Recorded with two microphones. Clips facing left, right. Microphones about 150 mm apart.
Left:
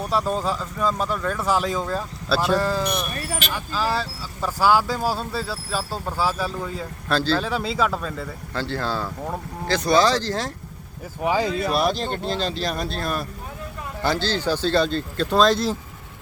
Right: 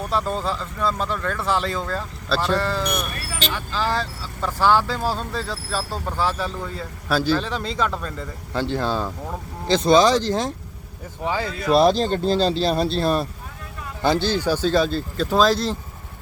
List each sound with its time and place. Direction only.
0.1 s speech: 5° left (ahead or behind)
7.1 s speech: 10° right (ahead or behind)
7.3 s speech: 5° left (ahead or behind)
8.5 s speech: 15° right (ahead or behind)
11.2 s speech: 15° left (ahead or behind)
11.8 s speech: 35° right (ahead or behind)
14.0 s speech: 20° right (ahead or behind); by 15.7 s centre (ahead or behind)